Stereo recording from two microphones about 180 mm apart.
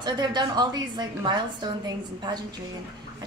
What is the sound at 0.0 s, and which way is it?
A woman's voice, 25° right (ahead or behind).